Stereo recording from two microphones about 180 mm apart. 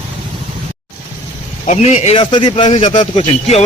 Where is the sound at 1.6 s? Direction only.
40° left (ahead or behind).